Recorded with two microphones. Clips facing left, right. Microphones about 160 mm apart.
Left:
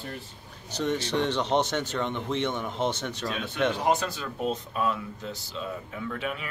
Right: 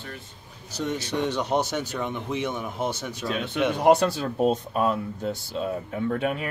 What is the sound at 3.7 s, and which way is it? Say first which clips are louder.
Speech: right 7 dB; 60° right (ahead or behind).